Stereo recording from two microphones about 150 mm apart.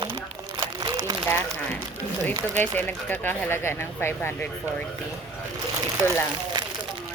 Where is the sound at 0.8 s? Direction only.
25° right (ahead or behind).